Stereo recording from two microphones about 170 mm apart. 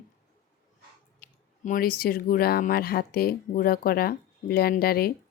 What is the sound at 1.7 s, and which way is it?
Speech, 55° left (ahead or behind).